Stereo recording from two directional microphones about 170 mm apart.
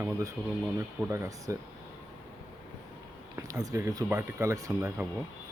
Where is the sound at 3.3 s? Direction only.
20° right (ahead or behind).